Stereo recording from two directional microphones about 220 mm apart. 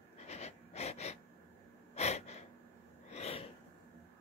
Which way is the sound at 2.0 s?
30° left (ahead or behind).